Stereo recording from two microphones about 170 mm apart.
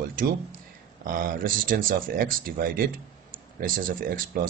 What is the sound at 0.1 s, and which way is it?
Speech, 55° right (ahead or behind).